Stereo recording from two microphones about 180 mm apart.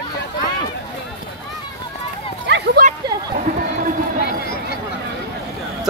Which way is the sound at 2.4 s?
75° right (ahead or behind).